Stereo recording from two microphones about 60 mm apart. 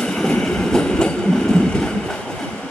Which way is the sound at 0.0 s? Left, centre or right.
Centre.